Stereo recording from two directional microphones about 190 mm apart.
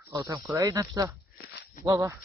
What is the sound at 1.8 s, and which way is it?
Speech, 20° right (ahead or behind).